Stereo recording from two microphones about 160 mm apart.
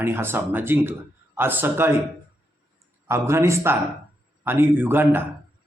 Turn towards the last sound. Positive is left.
turn(degrees=-15)  # may be behind; listen again after turning